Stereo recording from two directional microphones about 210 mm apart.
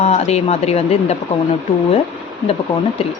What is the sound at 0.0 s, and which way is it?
Speech, 30° left (ahead or behind).